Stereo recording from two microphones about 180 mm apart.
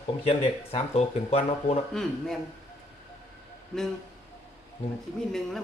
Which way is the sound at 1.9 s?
5° left (ahead or behind).